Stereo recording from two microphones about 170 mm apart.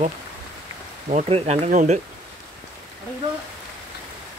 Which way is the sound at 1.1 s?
40° right (ahead or behind).